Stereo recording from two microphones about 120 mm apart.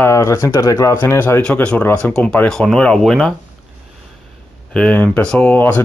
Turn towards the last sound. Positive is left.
turn(degrees=15)  # may be behind; listen again after turning